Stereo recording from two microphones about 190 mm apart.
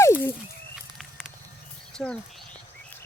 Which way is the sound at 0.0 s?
10° left (ahead or behind).